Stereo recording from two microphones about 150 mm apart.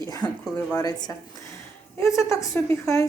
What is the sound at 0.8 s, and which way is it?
A woman's voice, 25° left (ahead or behind).